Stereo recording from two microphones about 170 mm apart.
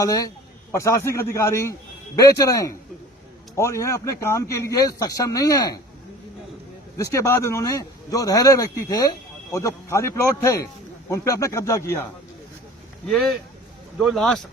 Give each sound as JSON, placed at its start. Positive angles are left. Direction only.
{"t": 0.0, "sound": "speech", "side_deg": 20}
{"t": 6.9, "sound": "speech", "side_deg": 15}
{"t": 13.1, "sound": "speech", "side_deg": 0}